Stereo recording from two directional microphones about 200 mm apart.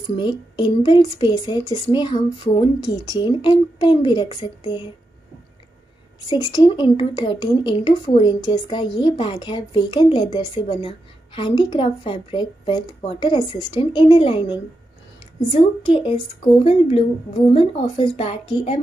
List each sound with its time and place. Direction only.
0.2 s a woman's voice: 25° left (ahead or behind)
6.2 s a woman's voice: 20° left (ahead or behind)